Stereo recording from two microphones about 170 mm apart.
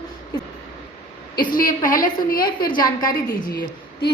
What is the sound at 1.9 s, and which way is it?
A woman's voice, 25° left (ahead or behind).